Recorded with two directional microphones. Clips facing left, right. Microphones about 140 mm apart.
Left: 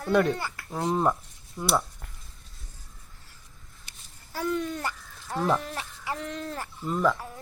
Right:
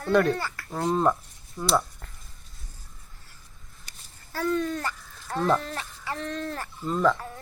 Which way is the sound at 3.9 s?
40° right (ahead or behind).